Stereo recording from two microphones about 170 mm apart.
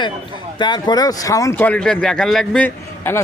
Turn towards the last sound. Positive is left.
turn(degrees=10)  # may be behind; listen again after turning